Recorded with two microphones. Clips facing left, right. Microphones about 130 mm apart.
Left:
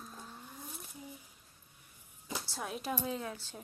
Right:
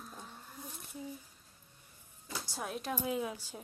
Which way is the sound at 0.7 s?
5° left (ahead or behind).